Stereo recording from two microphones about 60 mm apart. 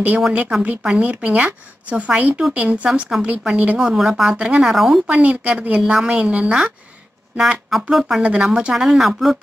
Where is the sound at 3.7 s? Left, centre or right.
Centre.